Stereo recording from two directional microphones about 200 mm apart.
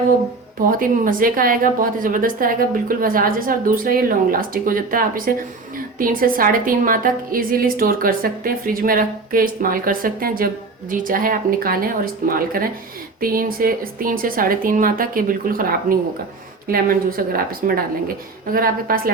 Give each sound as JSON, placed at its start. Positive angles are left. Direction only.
{"t": 0.6, "sound": "a woman's voice", "side_deg": -45}